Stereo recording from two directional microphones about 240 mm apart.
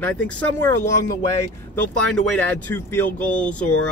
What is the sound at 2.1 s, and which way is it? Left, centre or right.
Speech, centre.